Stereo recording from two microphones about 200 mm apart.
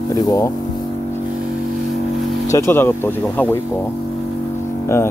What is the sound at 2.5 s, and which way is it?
Speech, 15° left (ahead or behind).